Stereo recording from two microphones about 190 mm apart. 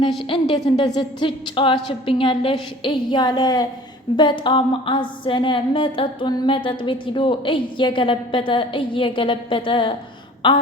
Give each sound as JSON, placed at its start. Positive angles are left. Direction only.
{"t": 0.3, "sound": "a woman's voice", "side_deg": 25}